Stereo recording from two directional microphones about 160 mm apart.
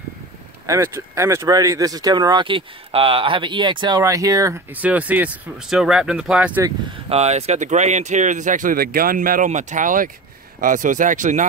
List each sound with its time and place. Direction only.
0.7 s speech: 15° right (ahead or behind)
4.7 s speech: 10° right (ahead or behind)
7.1 s speech: 40° right (ahead or behind)